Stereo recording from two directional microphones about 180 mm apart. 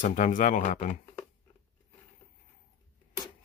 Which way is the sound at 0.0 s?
45° left (ahead or behind).